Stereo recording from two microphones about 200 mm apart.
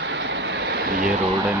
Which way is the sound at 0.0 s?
65° right (ahead or behind).